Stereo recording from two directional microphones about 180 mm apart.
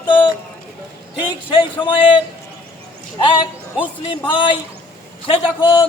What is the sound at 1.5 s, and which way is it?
Speech, 25° left (ahead or behind).